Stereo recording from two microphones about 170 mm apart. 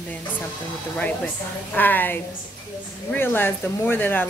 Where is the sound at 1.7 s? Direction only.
10° left (ahead or behind).